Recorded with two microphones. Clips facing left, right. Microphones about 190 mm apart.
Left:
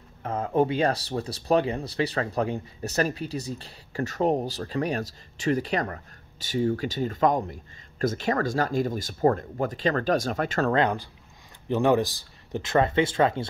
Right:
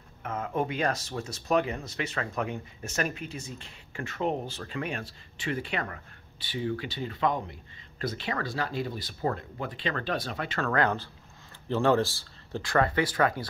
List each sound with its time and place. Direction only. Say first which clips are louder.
0.2 s speech: left 7 dB; 35° left (ahead or behind)
10.7 s speech: left 3 dB; 15° left (ahead or behind)